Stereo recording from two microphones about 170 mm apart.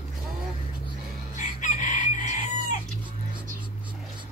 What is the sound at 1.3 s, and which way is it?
Chicken, 45° left (ahead or behind).